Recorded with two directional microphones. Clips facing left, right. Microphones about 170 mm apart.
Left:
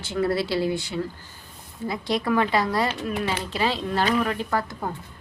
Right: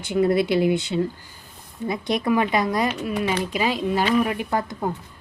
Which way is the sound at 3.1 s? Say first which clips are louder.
Right 3 dB; 15° right (ahead or behind).